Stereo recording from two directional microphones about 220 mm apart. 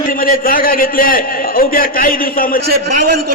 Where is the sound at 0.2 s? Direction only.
40° left (ahead or behind).